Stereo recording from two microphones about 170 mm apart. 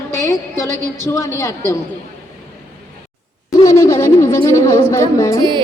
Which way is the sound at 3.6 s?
20° left (ahead or behind).